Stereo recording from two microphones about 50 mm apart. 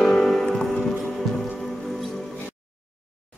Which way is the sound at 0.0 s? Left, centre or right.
Centre.